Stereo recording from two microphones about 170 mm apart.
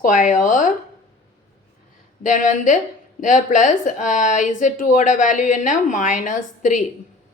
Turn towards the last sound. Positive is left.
turn(degrees=50)  # may be behind; listen again after turning